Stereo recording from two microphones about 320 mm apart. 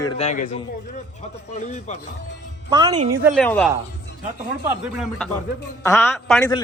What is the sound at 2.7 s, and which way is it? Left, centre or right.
Speech, centre.